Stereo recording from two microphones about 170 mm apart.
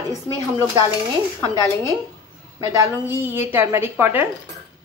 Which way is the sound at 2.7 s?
15° right (ahead or behind).